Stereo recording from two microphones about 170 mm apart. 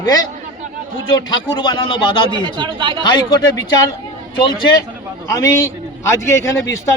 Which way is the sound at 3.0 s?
25° left (ahead or behind).